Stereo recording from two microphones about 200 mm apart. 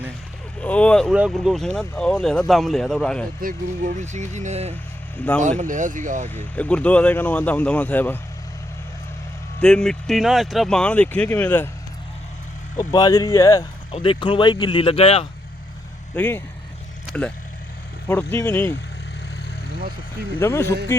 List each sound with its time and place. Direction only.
0.6 s speech: 5° left (ahead or behind)
3.4 s speech: 40° right (ahead or behind)
5.1 s speech: 10° left (ahead or behind)
5.4 s speech: 40° right (ahead or behind)
6.6 s speech: 5° left (ahead or behind)
9.6 s speech: 5° left (ahead or behind)
12.7 s speech: 20° left (ahead or behind)
16.1 s speech: 10° left (ahead or behind)
20.4 s speech: 15° left (ahead or behind)